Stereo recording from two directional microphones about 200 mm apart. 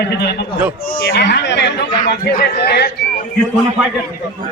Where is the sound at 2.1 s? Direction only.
50° left (ahead or behind).